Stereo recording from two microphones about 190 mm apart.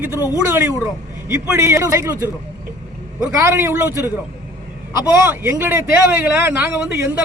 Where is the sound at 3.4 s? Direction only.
15° right (ahead or behind).